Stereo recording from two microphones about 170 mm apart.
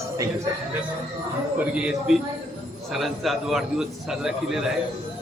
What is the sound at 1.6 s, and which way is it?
A man's voice, 5° right (ahead or behind).